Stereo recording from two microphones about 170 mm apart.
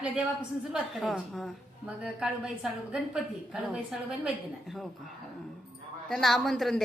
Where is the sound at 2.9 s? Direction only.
5° right (ahead or behind).